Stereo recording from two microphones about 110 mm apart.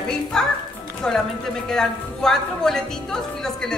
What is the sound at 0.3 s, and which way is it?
Music, 5° left (ahead or behind).